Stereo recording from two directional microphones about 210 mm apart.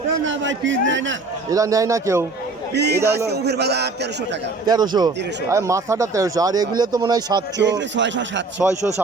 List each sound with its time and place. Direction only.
0.3 s a man's voice: 65° right (ahead or behind)
1.5 s speech: 15° right (ahead or behind)
2.7 s speech: 50° right (ahead or behind)
4.6 s speech: 20° right (ahead or behind)
7.6 s a man's voice: 60° right (ahead or behind)
8.6 s speech: 10° right (ahead or behind)